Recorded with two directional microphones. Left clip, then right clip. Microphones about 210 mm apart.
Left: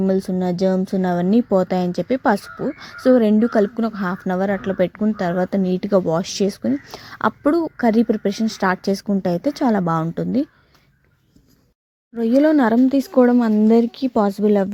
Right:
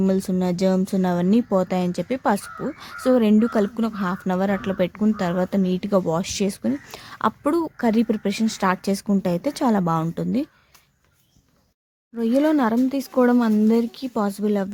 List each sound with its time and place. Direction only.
0.0 s a woman's voice: 10° left (ahead or behind)
12.1 s a woman's voice: 10° left (ahead or behind)